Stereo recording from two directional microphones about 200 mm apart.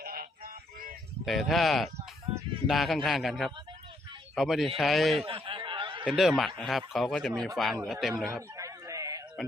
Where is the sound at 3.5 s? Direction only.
25° right (ahead or behind).